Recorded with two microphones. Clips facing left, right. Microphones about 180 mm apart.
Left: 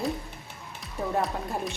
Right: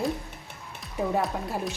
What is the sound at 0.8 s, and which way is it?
Speech, centre (ahead or behind).